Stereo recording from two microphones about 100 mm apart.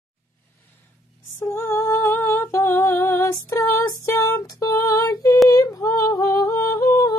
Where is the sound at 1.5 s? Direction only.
20° left (ahead or behind); by 5.4 s 35° left (ahead or behind).